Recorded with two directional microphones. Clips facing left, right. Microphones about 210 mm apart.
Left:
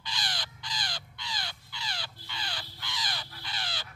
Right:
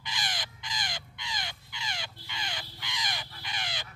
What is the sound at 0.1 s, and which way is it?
Crow, 20° right (ahead or behind).